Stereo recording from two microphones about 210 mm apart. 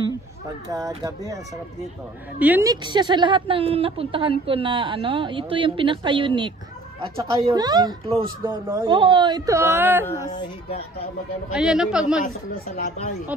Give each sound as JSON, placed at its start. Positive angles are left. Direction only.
{"t": 0.7, "sound": "speech", "side_deg": -15}
{"t": 10.0, "sound": "speech", "side_deg": 15}
{"t": 11.5, "sound": "a man's voice", "side_deg": -5}
{"t": 12.6, "sound": "speech", "side_deg": 35}